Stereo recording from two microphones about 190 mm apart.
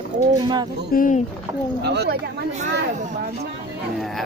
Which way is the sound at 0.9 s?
45° left (ahead or behind).